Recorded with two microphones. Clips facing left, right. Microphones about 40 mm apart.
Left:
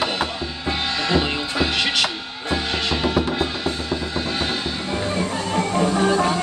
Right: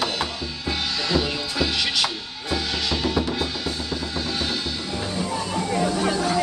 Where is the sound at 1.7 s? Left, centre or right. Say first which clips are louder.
Left 3 dB; left.